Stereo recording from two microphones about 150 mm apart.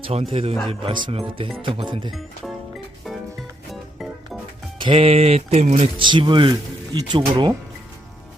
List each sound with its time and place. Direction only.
0.0 s speech: 40° right (ahead or behind)
2.0 s speech: centre (ahead or behind)
3.7 s music: centre (ahead or behind)
4.8 s music: 35° right (ahead or behind)
6.0 s speech: 30° right (ahead or behind)